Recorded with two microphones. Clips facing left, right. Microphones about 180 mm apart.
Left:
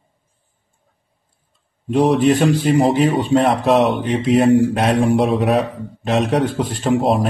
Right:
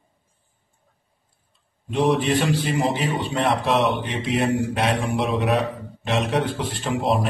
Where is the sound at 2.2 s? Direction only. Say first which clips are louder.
Left 7 dB; 40° left (ahead or behind).